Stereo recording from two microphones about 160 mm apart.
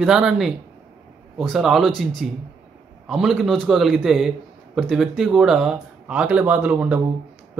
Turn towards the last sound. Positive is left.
turn(degrees=-10)  # may be behind; listen again after turning